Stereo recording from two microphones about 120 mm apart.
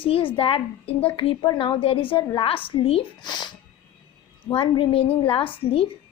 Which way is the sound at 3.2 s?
35° left (ahead or behind).